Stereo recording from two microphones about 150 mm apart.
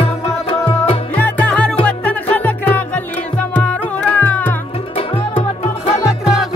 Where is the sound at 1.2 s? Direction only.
10° left (ahead or behind).